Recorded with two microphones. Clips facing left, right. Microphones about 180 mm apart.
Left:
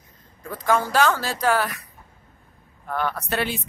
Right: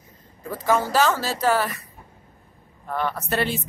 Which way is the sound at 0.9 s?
Centre (ahead or behind).